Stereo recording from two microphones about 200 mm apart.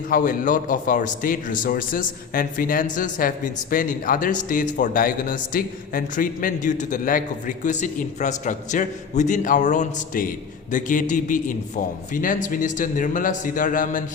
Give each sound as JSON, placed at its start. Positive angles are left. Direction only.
{"t": 0.1, "sound": "a man's voice", "side_deg": 45}